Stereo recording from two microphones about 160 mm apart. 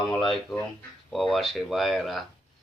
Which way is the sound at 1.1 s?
Centre (ahead or behind).